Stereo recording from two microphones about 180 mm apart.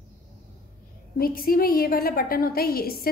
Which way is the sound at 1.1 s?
55° left (ahead or behind).